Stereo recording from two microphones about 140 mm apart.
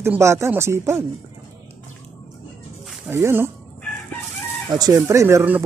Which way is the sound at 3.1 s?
15° right (ahead or behind).